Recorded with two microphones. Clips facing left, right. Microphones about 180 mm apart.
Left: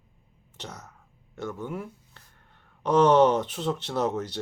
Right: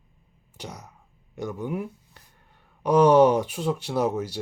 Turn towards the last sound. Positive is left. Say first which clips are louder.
# right 2 dB
turn(degrees=-10)  # may be behind; listen again after turning